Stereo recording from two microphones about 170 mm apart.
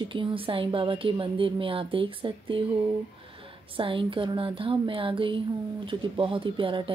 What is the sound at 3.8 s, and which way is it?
A woman's voice, 30° right (ahead or behind).